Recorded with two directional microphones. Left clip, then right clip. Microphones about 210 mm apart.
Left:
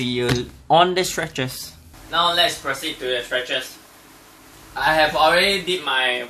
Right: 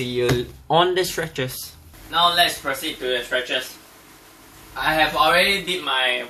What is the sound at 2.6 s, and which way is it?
Speech, centre (ahead or behind).